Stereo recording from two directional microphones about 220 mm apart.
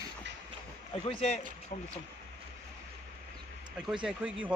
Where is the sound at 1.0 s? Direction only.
25° left (ahead or behind).